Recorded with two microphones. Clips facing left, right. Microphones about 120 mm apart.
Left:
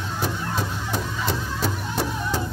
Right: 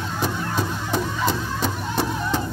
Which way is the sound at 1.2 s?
5° left (ahead or behind).